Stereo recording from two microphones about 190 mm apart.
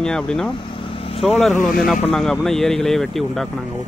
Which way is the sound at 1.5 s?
45° left (ahead or behind).